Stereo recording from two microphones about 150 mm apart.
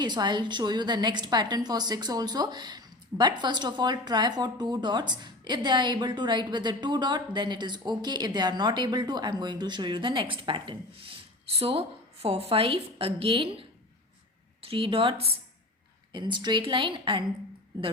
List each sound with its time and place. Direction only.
0.0 s a woman's voice: 30° right (ahead or behind)
14.7 s a woman's voice: 35° right (ahead or behind)